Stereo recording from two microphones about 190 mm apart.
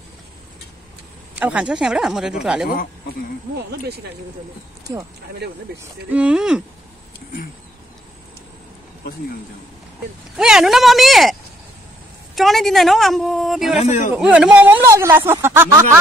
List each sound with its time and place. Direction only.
1.3 s speech: 5° right (ahead or behind)
2.7 s speech: 50° left (ahead or behind)
3.5 s speech: 60° right (ahead or behind)
6.0 s speech: 5° right (ahead or behind)
10.3 s speech: 5° right (ahead or behind)
12.4 s speech: centre (ahead or behind)
13.7 s a man's voice: 35° left (ahead or behind)
14.1 s speech: 5° right (ahead or behind)